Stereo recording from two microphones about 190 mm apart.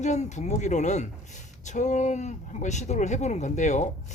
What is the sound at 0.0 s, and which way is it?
A woman's voice, 40° left (ahead or behind).